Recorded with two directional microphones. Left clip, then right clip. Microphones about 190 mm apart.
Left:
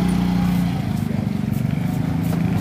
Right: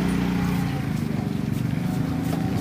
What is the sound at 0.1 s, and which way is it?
Vehicle, 55° left (ahead or behind).